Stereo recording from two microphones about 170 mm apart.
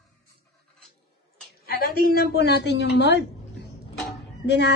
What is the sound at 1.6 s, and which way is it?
A woman's voice, 60° left (ahead or behind).